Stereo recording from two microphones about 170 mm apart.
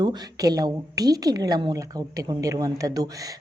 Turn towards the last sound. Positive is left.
turn(degrees=-20)  # may be behind; listen again after turning